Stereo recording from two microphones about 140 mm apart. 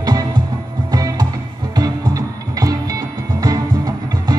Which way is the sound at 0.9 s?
25° right (ahead or behind).